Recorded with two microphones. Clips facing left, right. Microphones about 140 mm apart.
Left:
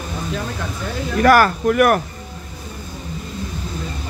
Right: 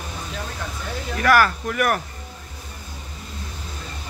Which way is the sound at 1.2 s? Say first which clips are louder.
Left 5 dB; 45° left (ahead or behind).